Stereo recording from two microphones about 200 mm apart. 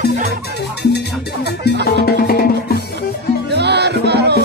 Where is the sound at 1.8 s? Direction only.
50° left (ahead or behind).